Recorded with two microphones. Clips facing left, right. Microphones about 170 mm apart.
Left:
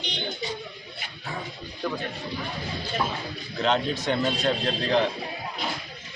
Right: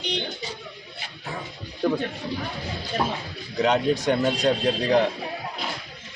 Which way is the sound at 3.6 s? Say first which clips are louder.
Right 4 dB; 10° right (ahead or behind).